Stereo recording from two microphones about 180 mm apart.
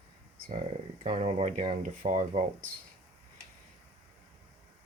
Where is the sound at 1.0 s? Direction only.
35° right (ahead or behind).